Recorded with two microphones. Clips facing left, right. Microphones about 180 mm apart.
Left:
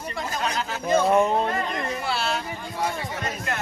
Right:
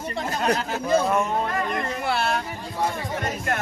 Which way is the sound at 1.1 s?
25° left (ahead or behind).